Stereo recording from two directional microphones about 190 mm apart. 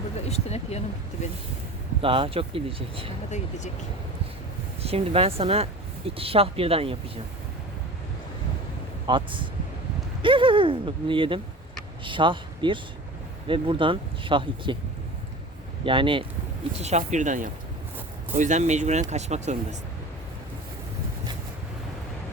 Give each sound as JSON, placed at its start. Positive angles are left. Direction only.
{"t": 0.3, "sound": "speech", "side_deg": 35}
{"t": 2.0, "sound": "speech", "side_deg": -30}
{"t": 3.2, "sound": "speech", "side_deg": 40}
{"t": 4.8, "sound": "speech", "side_deg": -30}
{"t": 9.0, "sound": "speech", "side_deg": -25}
{"t": 15.8, "sound": "speech", "side_deg": -25}
{"t": 16.8, "sound": "speech", "side_deg": -40}